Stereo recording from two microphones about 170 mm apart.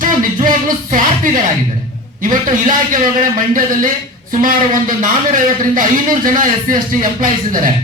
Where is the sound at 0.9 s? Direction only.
50° right (ahead or behind).